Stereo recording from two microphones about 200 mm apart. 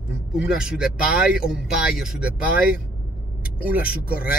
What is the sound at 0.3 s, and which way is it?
Speech, 5° right (ahead or behind).